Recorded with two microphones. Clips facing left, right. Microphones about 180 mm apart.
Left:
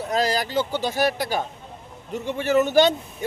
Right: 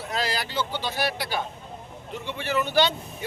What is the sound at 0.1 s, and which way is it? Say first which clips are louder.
Speech: left 6 dB; 40° left (ahead or behind).